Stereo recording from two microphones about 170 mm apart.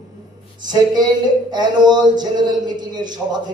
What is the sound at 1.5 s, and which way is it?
A man's voice, 25° right (ahead or behind).